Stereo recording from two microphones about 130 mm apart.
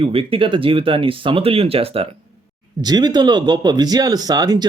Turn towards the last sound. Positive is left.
turn(degrees=-30)  # may be behind; listen again after turning